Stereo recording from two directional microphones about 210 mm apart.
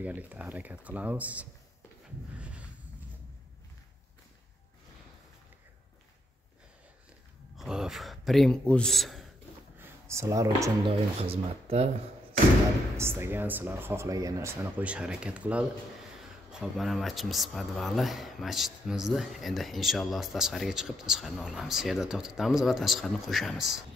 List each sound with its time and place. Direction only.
0.0 s speech: 5° right (ahead or behind)
2.3 s a sound: 5° right (ahead or behind)
7.5 s speech: 5° right (ahead or behind)
9.8 s a sound: 15° right (ahead or behind)
10.9 s speech: 30° right (ahead or behind)
12.9 s speech: 10° right (ahead or behind)